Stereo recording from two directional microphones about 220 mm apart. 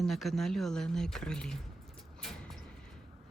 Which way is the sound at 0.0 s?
Centre (ahead or behind).